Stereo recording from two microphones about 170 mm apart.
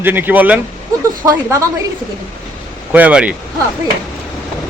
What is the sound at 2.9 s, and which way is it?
Speech, 10° right (ahead or behind).